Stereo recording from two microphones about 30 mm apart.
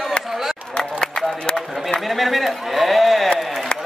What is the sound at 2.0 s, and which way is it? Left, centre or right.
A man's voice, centre.